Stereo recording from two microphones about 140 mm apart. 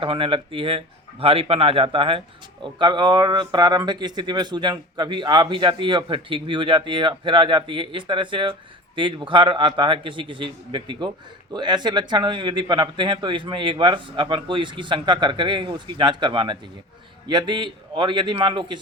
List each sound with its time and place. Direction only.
0.0 s speech: 40° right (ahead or behind)